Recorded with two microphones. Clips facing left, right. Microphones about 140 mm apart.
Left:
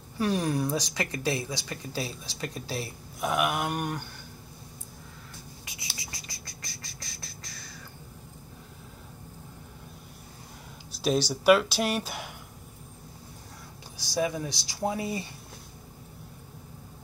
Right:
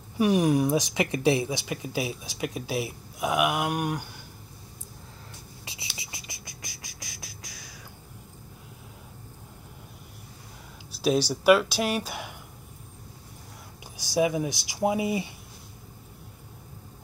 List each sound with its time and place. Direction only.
0.2 s speech: 15° right (ahead or behind)
5.9 s a sound: 25° right (ahead or behind)
11.0 s speech: 5° right (ahead or behind)
13.9 s speech: 15° right (ahead or behind)